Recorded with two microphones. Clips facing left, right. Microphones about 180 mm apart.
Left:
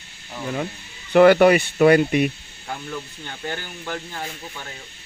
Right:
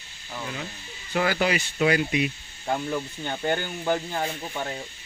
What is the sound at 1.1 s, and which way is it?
Speech, 65° left (ahead or behind).